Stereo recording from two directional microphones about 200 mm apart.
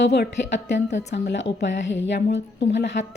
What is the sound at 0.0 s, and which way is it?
A woman's voice, 60° left (ahead or behind).